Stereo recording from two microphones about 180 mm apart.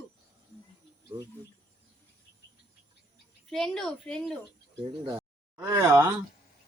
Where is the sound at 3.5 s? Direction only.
Centre (ahead or behind).